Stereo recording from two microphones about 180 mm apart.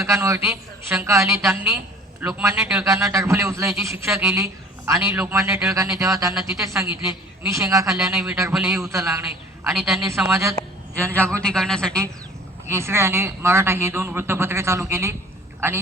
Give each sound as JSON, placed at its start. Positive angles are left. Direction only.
{"t": 0.0, "sound": "a man's voice", "side_deg": -15}
{"t": 8.1, "sound": "a man's voice", "side_deg": -10}
{"t": 8.9, "sound": "a man's voice", "side_deg": -15}
{"t": 9.7, "sound": "speech", "side_deg": 0}
{"t": 10.2, "sound": "a man's voice", "side_deg": -15}
{"t": 11.3, "sound": "speech", "side_deg": 5}
{"t": 12.6, "sound": "a man's voice", "side_deg": -15}